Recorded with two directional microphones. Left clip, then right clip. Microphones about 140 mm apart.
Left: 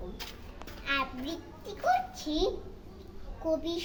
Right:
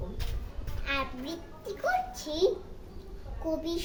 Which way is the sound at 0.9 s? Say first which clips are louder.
Left 1 dB; 25° right (ahead or behind).